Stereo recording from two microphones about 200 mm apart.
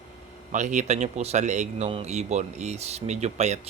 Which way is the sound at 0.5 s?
35° right (ahead or behind).